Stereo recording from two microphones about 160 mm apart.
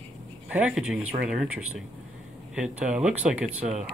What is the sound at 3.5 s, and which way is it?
Speech, 40° right (ahead or behind).